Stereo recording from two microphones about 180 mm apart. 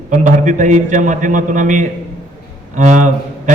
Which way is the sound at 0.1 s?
45° right (ahead or behind).